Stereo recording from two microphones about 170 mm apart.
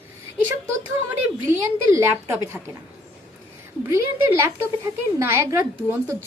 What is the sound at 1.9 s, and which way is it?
Speech, 15° right (ahead or behind).